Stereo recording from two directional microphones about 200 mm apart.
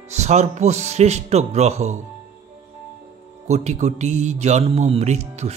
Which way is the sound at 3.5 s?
35° right (ahead or behind).